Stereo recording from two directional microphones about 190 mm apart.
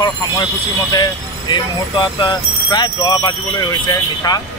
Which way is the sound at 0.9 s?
20° left (ahead or behind).